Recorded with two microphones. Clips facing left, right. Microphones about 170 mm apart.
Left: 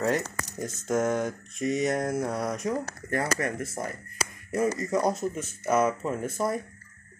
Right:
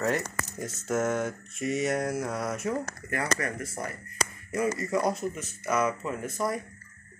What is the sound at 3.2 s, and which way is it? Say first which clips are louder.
Speech: left 2 dB; 45° left (ahead or behind).